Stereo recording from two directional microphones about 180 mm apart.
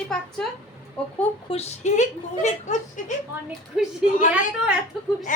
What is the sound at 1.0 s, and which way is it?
Speech, 5° left (ahead or behind).